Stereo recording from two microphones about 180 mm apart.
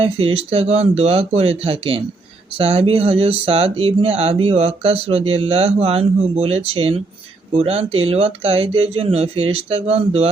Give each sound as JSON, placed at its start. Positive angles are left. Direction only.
{"t": 0.0, "sound": "speech", "side_deg": -30}